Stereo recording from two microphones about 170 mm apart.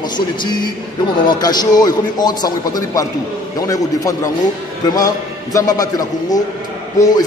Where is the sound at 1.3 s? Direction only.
25° left (ahead or behind).